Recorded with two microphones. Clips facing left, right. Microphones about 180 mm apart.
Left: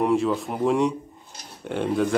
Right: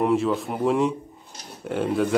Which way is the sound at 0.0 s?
Centre (ahead or behind).